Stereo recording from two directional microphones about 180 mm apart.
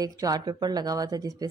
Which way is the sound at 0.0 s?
20° right (ahead or behind).